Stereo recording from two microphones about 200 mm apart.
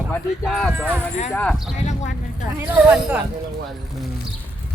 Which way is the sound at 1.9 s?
35° left (ahead or behind).